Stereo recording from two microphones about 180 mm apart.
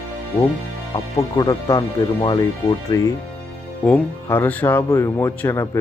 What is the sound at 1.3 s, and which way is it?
Speech, 20° left (ahead or behind).